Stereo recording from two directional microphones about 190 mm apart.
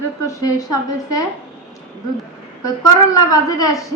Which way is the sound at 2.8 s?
20° left (ahead or behind).